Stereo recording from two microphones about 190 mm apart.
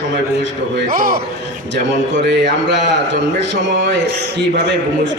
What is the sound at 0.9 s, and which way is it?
Speech, 50° right (ahead or behind).